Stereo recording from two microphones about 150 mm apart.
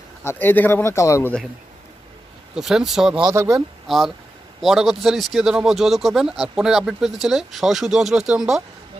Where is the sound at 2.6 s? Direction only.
5° right (ahead or behind).